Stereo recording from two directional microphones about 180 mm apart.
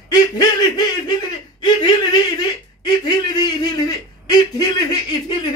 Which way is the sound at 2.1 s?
25° left (ahead or behind).